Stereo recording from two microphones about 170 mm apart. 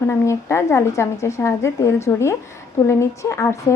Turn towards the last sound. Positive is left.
turn(degrees=20)  # may be behind; listen again after turning